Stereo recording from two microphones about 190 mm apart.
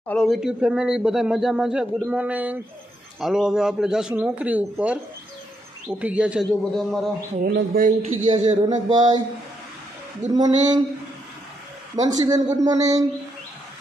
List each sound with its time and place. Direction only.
0.1 s speech: centre (ahead or behind)
6.0 s speech: 5° right (ahead or behind)
7.4 s speech: 55° right (ahead or behind)
8.3 s a man's voice: 25° right (ahead or behind)
10.3 s a man's voice: 20° right (ahead or behind)
12.0 s a man's voice: 20° right (ahead or behind)